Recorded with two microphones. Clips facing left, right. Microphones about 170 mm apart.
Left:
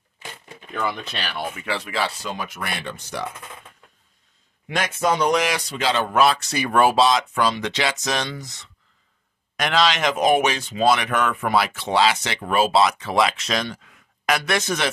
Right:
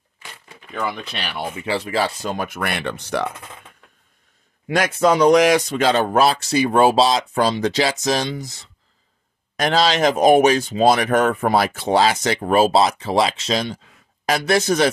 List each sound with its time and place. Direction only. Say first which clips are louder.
0.7 s speech: right 1 dB; 10° right (ahead or behind)
1.5 s speech: right 5 dB; 30° right (ahead or behind); by 3.3 s 65° right (ahead or behind)
4.6 s speech: right 5 dB; 35° right (ahead or behind)